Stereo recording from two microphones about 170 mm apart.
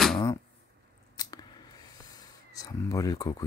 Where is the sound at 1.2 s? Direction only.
25° left (ahead or behind).